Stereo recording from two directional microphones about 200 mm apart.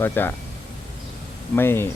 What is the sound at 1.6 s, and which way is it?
Speech, 10° left (ahead or behind).